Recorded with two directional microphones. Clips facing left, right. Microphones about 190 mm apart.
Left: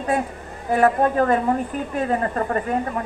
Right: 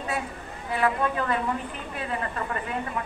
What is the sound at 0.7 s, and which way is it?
A woman's voice, 45° left (ahead or behind).